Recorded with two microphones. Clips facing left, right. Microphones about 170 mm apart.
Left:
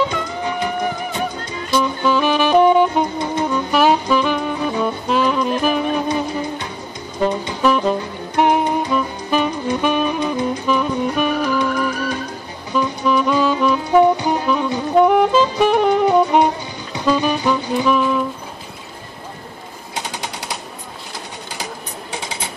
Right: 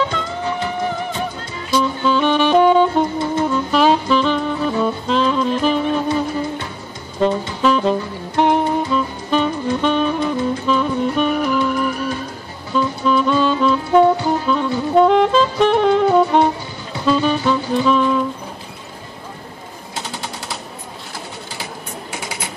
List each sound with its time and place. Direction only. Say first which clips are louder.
0.1 s music: even; 15° left (ahead or behind)
1.7 s saxophone: even; 10° left (ahead or behind)
7.2 s music: right 2 dB; 15° left (ahead or behind)
8.4 s saxophone: even; 15° left (ahead or behind)
12.7 s saxophone: even; 15° left (ahead or behind)
16.9 s music: right 1 dB; 15° left (ahead or behind)